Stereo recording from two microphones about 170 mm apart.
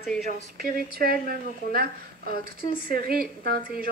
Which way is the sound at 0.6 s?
60° right (ahead or behind).